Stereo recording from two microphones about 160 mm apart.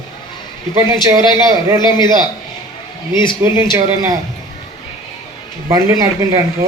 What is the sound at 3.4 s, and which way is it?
Speech, 20° right (ahead or behind).